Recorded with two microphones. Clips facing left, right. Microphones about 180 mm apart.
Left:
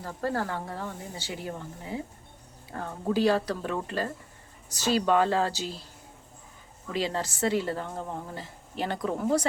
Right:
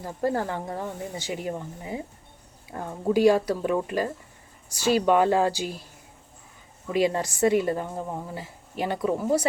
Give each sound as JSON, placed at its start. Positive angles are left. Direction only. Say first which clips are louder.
{"t": 0.0, "sound": "a woman's voice", "louder": "right 4 dB", "side_deg": -15}
{"t": 6.9, "sound": "a woman's voice", "louder": "right 6 dB", "side_deg": -15}